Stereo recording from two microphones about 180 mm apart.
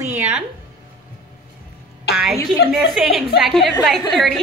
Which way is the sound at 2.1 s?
60° left (ahead or behind).